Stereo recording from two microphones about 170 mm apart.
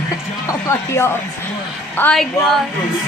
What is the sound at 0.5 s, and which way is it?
Speech, 15° left (ahead or behind).